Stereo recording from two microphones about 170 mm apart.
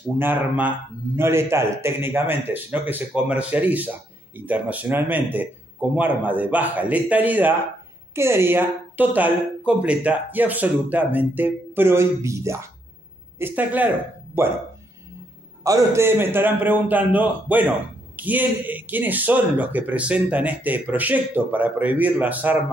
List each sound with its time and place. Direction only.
0.2 s a man's voice: 10° right (ahead or behind)
15.6 s a man's voice: 20° right (ahead or behind)